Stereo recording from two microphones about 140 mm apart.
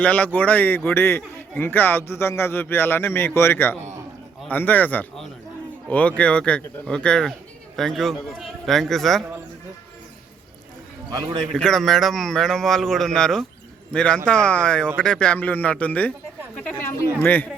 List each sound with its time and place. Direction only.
0.0 s a man's voice: 10° left (ahead or behind)
11.1 s a man's voice: 25° right (ahead or behind)
11.5 s a man's voice: centre (ahead or behind)